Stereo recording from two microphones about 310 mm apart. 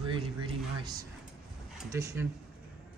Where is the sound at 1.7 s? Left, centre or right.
Centre.